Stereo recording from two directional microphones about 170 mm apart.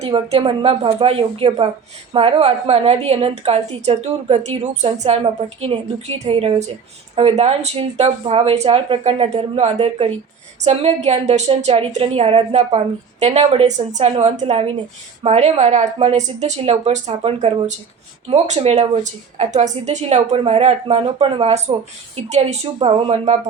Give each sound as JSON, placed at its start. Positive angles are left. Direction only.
{"t": 0.0, "sound": "a woman's voice", "side_deg": -35}